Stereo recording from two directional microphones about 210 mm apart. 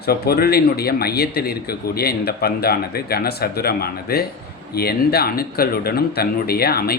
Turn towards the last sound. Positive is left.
turn(degrees=45)  # may be behind; listen again after turning